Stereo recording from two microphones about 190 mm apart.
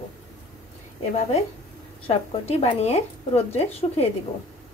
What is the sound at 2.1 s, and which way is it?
Speech, 35° left (ahead or behind).